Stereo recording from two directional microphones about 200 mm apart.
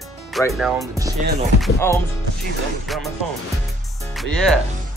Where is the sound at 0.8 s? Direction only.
15° right (ahead or behind).